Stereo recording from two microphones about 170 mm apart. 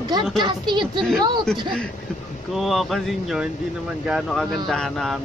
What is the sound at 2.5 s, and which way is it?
Speech, centre (ahead or behind).